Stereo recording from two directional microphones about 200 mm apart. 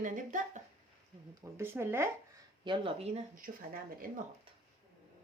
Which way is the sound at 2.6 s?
25° right (ahead or behind).